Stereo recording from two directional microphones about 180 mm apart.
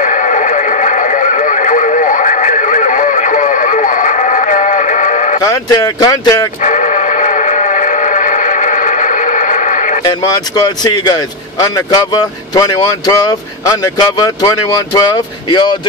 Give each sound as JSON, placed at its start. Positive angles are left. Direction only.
{"t": 0.0, "sound": "radio", "side_deg": 45}
{"t": 5.4, "sound": "speech", "side_deg": 20}
{"t": 6.6, "sound": "a sound", "side_deg": 40}
{"t": 10.0, "sound": "speech", "side_deg": 20}